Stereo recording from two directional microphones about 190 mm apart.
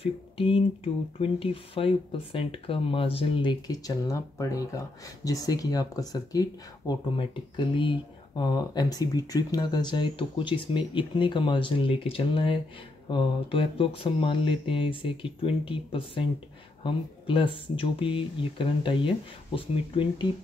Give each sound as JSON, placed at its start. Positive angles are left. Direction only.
{"t": 0.0, "sound": "speech", "side_deg": 30}